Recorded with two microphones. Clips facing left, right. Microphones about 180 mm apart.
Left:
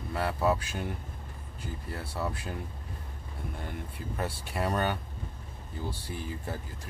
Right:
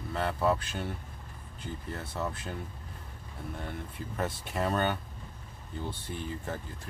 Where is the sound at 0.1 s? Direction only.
10° left (ahead or behind).